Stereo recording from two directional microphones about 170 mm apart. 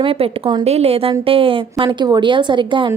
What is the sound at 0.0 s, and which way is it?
A woman's voice, 30° right (ahead or behind).